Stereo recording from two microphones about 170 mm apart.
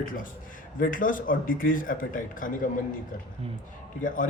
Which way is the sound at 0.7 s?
55° left (ahead or behind).